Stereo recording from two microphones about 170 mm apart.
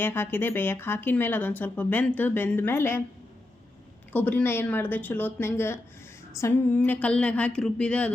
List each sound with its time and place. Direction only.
0.0 s speech: 15° left (ahead or behind)
4.1 s speech: 10° left (ahead or behind)